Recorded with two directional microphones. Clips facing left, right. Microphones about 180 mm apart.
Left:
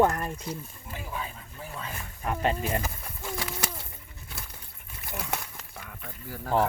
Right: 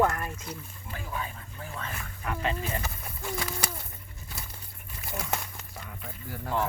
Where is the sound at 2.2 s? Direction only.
40° left (ahead or behind).